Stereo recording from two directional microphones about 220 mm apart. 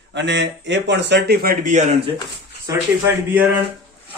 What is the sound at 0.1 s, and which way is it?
A man's voice, 55° right (ahead or behind).